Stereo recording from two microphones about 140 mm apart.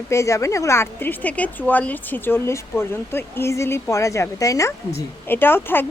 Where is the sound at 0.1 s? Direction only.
20° left (ahead or behind).